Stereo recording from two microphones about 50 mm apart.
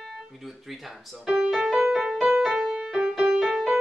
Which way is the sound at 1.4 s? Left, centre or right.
Centre.